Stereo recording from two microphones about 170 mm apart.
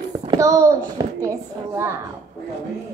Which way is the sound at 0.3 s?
20° right (ahead or behind).